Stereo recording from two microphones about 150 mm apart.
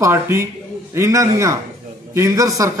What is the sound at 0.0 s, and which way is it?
A man's voice, 20° right (ahead or behind).